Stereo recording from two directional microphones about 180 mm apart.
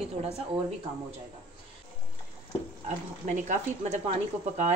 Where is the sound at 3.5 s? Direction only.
40° right (ahead or behind).